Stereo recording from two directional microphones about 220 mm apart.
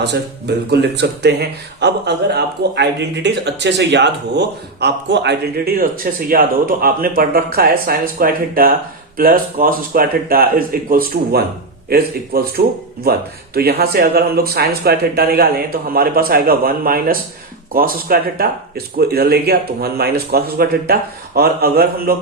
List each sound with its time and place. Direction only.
0.0 s speech: 50° right (ahead or behind)